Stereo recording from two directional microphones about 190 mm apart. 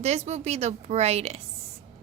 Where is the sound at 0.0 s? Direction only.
35° right (ahead or behind).